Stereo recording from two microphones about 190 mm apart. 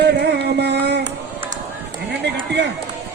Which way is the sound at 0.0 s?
60° right (ahead or behind).